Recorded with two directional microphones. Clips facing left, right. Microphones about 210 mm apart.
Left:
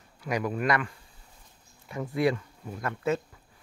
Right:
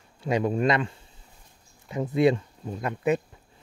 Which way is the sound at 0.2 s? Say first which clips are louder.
Right 5 dB; 25° right (ahead or behind).